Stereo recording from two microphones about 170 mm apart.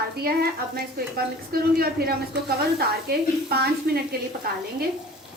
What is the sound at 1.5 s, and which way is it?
A woman's voice, 65° right (ahead or behind).